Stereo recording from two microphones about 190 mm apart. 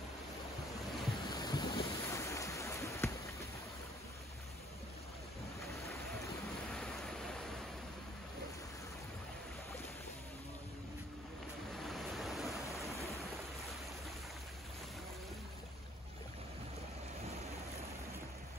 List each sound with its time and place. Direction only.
1.3 s boat: 20° left (ahead or behind)
6.7 s a sound: 5° left (ahead or behind)
11.7 s waves: centre (ahead or behind)